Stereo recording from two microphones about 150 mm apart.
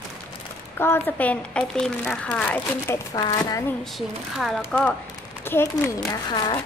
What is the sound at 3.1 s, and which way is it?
Speech, 25° left (ahead or behind).